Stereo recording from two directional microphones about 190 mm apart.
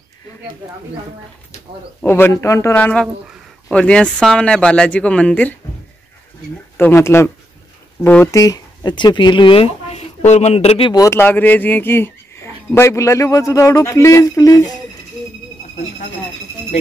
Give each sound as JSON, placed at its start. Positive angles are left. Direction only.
{"t": 2.0, "sound": "speech", "side_deg": 10}
{"t": 6.8, "sound": "speech", "side_deg": 15}